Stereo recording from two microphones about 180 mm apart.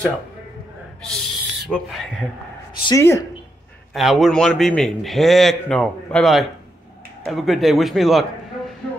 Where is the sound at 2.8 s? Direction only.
15° left (ahead or behind).